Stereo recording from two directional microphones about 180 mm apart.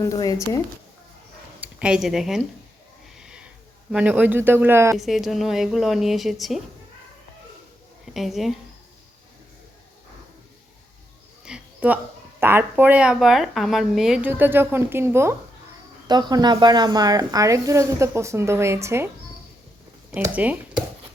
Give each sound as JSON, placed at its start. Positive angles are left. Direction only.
{"t": 0.0, "sound": "speech", "side_deg": 20}
{"t": 1.6, "sound": "speech", "side_deg": -5}
{"t": 3.2, "sound": "a sound", "side_deg": -5}
{"t": 3.9, "sound": "speech", "side_deg": -10}
{"t": 4.9, "sound": "a woman's voice", "side_deg": 0}
{"t": 8.1, "sound": "a woman's voice", "side_deg": 0}
{"t": 11.4, "sound": "a sound", "side_deg": -5}
{"t": 12.4, "sound": "speech", "side_deg": -10}
{"t": 20.1, "sound": "speech", "side_deg": -10}